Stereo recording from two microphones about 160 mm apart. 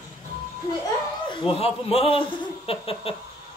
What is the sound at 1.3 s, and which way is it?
A man's voice, 35° left (ahead or behind).